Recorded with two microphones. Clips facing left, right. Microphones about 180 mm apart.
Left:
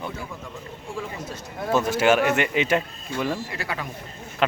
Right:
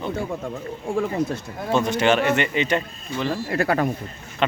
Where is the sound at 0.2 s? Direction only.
50° right (ahead or behind).